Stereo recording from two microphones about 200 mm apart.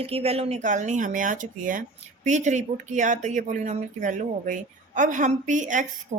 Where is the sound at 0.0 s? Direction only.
30° right (ahead or behind).